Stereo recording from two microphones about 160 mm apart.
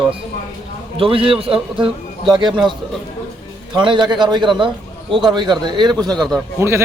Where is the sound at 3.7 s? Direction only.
30° right (ahead or behind).